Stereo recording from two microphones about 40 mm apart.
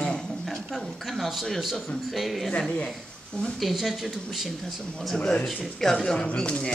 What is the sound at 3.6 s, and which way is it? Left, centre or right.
Speech, centre.